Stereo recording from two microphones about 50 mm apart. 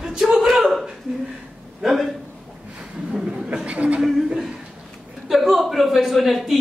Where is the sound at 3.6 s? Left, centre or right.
Right.